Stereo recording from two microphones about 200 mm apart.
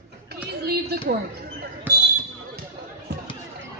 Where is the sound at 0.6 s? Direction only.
50° right (ahead or behind).